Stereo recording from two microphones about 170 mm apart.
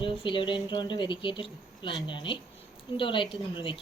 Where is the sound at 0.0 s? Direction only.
30° left (ahead or behind).